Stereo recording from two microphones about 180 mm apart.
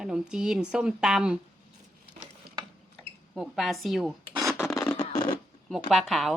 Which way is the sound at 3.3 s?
Centre (ahead or behind).